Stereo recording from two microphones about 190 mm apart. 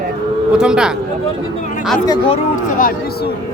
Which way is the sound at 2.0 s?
20° left (ahead or behind).